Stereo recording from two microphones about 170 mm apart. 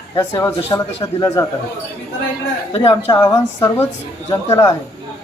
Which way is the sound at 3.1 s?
20° left (ahead or behind).